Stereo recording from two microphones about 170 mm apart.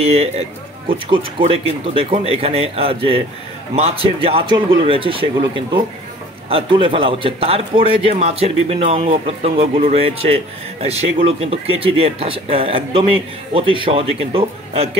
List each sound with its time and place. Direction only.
0.0 s a man's voice: 35° right (ahead or behind)